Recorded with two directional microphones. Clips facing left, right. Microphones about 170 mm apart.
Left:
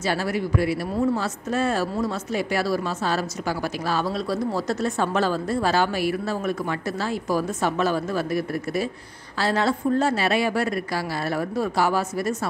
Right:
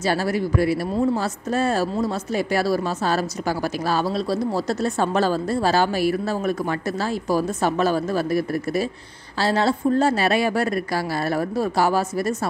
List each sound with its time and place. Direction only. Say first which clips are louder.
0.0 s speech: right 3 dB; 35° right (ahead or behind)